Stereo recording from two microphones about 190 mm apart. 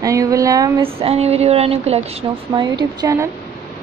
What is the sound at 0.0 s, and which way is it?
Speech, 15° right (ahead or behind).